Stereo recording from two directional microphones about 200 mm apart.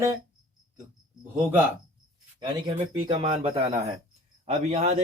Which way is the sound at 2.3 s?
25° right (ahead or behind).